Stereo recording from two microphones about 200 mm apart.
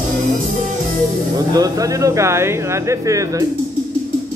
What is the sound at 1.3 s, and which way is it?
Speech, 20° right (ahead or behind).